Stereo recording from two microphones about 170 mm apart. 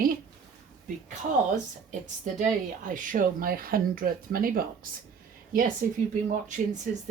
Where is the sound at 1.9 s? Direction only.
45° right (ahead or behind).